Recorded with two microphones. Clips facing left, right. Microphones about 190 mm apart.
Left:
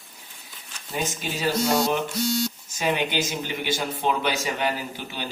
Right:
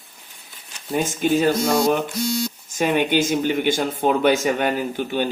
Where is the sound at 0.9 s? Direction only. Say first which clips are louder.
Right 10 dB; 50° right (ahead or behind).